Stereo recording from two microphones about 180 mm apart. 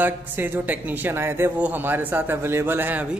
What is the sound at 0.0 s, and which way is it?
Speech, 10° right (ahead or behind).